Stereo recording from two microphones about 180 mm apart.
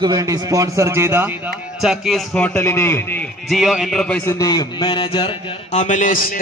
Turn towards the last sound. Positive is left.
turn(degrees=50)  # may be behind; listen again after turning